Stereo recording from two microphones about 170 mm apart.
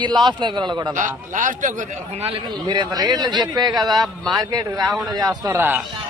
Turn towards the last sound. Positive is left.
turn(degrees=-15)  # may be behind; listen again after turning